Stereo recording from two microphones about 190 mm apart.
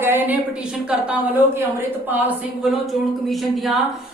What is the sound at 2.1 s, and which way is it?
A woman's voice, 10° right (ahead or behind).